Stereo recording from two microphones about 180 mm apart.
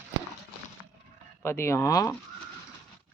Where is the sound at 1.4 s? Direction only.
15° left (ahead or behind).